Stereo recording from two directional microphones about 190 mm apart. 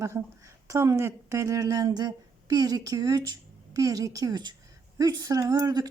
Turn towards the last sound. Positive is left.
turn(degrees=-20)  # may be behind; listen again after turning